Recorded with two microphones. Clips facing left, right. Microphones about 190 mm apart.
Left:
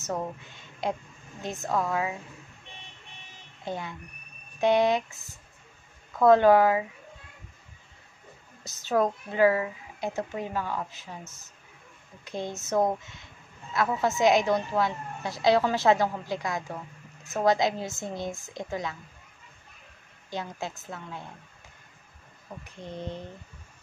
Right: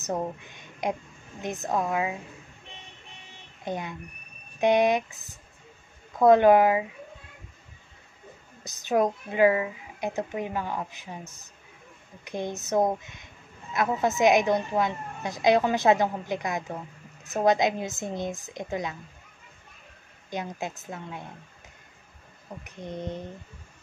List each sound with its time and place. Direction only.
0.0 s a woman's voice: 15° right (ahead or behind)
3.6 s a woman's voice: 15° right (ahead or behind)
8.6 s a woman's voice: 15° right (ahead or behind)
20.2 s speech: 20° right (ahead or behind)
22.6 s speech: 15° right (ahead or behind)